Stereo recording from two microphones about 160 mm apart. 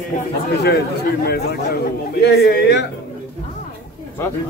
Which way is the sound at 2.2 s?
90° left.